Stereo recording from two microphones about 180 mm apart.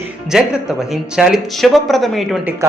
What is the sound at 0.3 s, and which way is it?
Speech, 5° right (ahead or behind).